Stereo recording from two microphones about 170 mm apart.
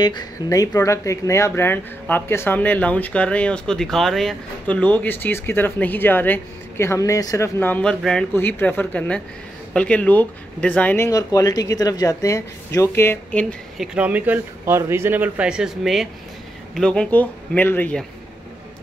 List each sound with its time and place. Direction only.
0.0 s speech: 20° left (ahead or behind); by 13.8 s 5° left (ahead or behind)
13.9 s a man's voice: 10° right (ahead or behind); by 18.0 s 10° left (ahead or behind)